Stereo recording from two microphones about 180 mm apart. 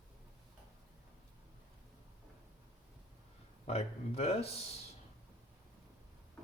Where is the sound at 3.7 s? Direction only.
35° left (ahead or behind).